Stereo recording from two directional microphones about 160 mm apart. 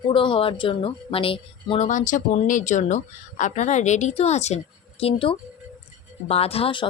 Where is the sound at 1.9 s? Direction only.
55° left (ahead or behind).